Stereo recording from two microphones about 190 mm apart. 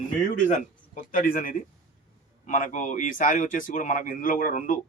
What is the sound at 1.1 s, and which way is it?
Speech, 45° left (ahead or behind).